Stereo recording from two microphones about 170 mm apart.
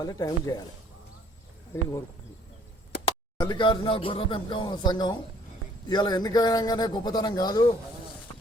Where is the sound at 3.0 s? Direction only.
30° left (ahead or behind).